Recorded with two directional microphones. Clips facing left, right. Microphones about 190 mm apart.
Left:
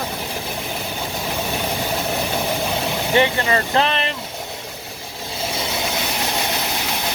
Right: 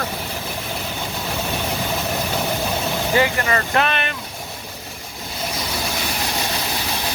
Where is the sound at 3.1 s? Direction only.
25° left (ahead or behind).